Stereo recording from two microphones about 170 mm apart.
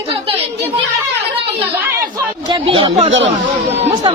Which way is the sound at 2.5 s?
30° right (ahead or behind).